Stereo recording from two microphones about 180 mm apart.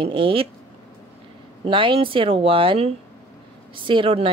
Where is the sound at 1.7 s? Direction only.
30° right (ahead or behind).